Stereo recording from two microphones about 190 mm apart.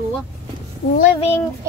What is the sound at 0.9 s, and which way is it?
Speech, 35° left (ahead or behind).